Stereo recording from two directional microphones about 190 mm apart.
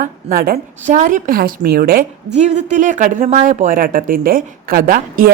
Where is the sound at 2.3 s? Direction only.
35° right (ahead or behind).